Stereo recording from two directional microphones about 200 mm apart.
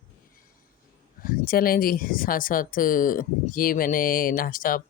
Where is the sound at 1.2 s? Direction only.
45° left (ahead or behind).